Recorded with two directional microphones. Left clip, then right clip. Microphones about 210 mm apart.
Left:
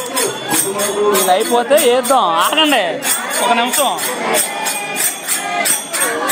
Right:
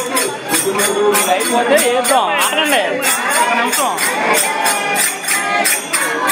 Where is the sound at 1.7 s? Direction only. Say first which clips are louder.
Left 1 dB; 40° left (ahead or behind).